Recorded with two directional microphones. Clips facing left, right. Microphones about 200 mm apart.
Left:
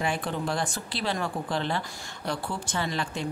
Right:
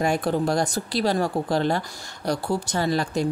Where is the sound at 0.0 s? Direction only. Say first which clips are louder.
Right 7 dB; 40° right (ahead or behind).